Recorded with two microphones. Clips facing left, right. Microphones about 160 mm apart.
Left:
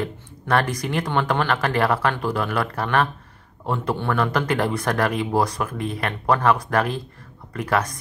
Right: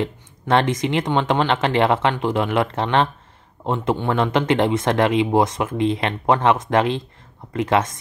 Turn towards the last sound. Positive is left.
turn(degrees=-25)  # may be behind; listen again after turning